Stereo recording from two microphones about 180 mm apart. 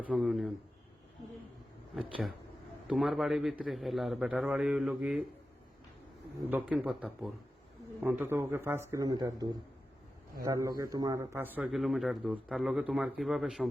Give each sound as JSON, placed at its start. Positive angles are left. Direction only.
{"t": 0.0, "sound": "speech", "side_deg": -5}
{"t": 2.8, "sound": "speech", "side_deg": 0}
{"t": 6.5, "sound": "speech", "side_deg": -5}
{"t": 11.5, "sound": "speech", "side_deg": 0}